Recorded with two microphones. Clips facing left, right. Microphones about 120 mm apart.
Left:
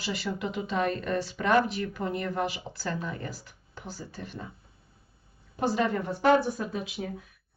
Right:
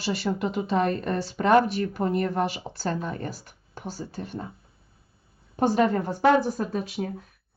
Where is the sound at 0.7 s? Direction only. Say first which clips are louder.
Right 3 dB; 50° right (ahead or behind).